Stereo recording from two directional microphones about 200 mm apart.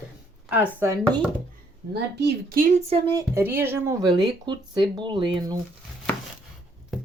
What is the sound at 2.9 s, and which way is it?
Speech, 20° right (ahead or behind).